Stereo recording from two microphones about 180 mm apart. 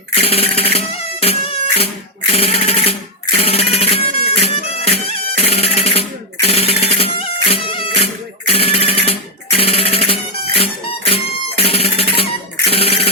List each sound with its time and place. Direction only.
0.1 s music: 35° left (ahead or behind)